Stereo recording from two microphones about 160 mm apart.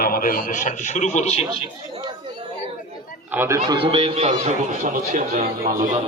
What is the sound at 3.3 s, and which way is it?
Speech, 15° right (ahead or behind).